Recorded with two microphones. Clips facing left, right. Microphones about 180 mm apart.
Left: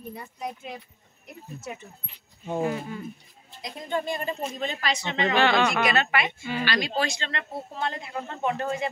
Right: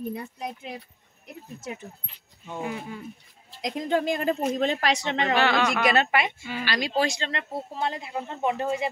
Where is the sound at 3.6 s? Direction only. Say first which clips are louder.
Right 5 dB; 90° right.